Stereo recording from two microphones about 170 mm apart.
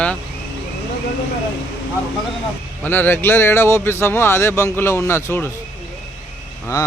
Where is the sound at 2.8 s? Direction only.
10° left (ahead or behind).